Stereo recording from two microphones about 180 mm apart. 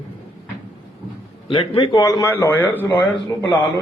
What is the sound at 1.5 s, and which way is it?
A man's voice, 25° left (ahead or behind).